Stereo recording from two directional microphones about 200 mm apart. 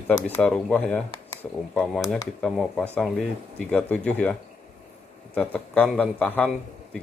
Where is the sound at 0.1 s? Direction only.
10° left (ahead or behind).